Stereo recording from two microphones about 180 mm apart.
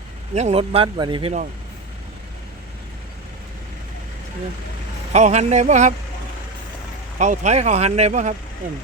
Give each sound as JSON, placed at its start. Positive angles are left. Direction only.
{"t": 0.3, "sound": "speech", "side_deg": -35}
{"t": 5.1, "sound": "speech", "side_deg": -40}
{"t": 7.2, "sound": "speech", "side_deg": -40}